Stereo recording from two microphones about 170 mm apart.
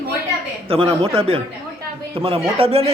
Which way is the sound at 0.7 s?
35° right (ahead or behind).